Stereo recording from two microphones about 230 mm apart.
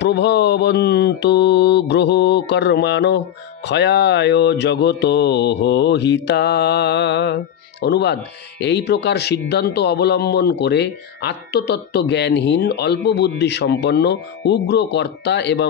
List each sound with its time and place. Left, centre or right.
0.0 s speech: left